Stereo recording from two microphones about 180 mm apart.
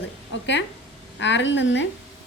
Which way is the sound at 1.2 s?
85° left.